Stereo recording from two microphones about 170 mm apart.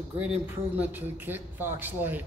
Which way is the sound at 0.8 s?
10° right (ahead or behind).